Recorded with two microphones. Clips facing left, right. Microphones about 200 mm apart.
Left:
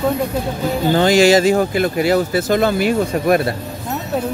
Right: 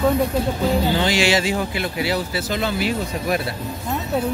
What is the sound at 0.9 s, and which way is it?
Speech, 45° left (ahead or behind).